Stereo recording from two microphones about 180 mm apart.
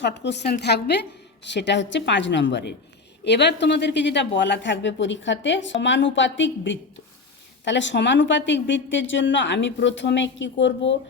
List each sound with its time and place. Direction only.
0.0 s a woman's voice: 75° left (ahead or behind)
1.5 s a woman's voice: 80° left